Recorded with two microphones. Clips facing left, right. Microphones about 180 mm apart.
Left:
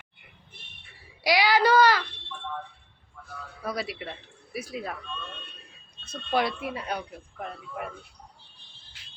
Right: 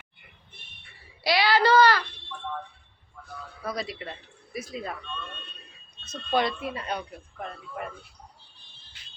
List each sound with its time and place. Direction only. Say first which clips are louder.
1.2 s child singing: even; 15° left (ahead or behind)
3.6 s speech: left 1 dB; 10° left (ahead or behind)